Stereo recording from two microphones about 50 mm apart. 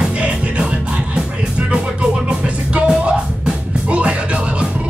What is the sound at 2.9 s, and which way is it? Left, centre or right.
Music, centre.